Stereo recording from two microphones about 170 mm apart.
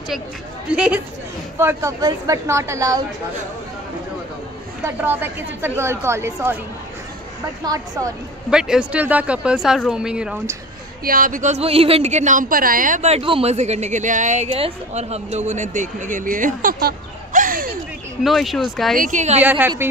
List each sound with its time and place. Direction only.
0.7 s a woman's voice: 5° right (ahead or behind)
4.8 s a woman's voice: 15° right (ahead or behind)
7.6 s speech: 20° right (ahead or behind)
8.5 s speech: 5° right (ahead or behind)
11.1 s a woman's voice: 55° right (ahead or behind)
18.2 s speech: centre (ahead or behind)
18.9 s a woman's voice: 50° right (ahead or behind)
19.4 s a woman's voice: 10° right (ahead or behind)